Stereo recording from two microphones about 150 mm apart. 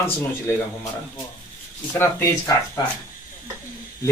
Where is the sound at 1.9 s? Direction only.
15° left (ahead or behind).